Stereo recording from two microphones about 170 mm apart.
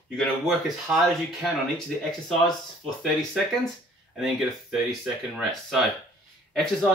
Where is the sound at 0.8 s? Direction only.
Centre (ahead or behind).